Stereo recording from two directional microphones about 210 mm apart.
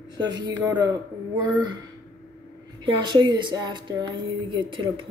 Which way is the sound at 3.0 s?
20° right (ahead or behind).